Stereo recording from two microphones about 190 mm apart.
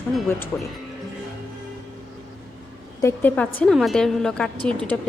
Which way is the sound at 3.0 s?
10° left (ahead or behind).